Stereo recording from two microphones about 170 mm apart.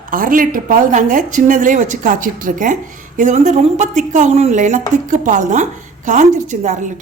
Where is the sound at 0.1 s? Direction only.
55° right (ahead or behind).